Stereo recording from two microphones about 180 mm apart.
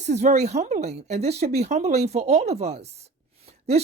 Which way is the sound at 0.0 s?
40° right (ahead or behind).